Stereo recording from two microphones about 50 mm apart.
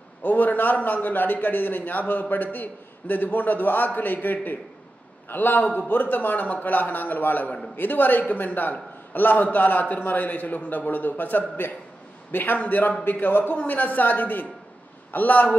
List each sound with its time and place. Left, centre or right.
0.2 s a man's voice: left